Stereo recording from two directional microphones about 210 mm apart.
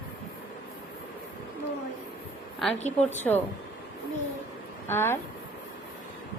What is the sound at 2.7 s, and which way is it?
Speech, 30° left (ahead or behind).